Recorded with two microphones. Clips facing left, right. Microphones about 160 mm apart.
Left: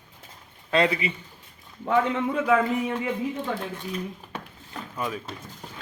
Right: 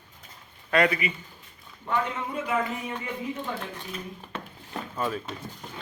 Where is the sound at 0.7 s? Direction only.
25° left (ahead or behind).